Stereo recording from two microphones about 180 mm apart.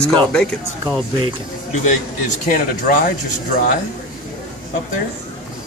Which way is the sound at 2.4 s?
50° left (ahead or behind).